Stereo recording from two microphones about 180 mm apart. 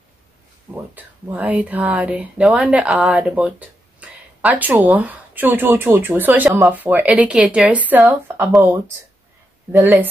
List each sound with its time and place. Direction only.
0.7 s speech: 10° right (ahead or behind)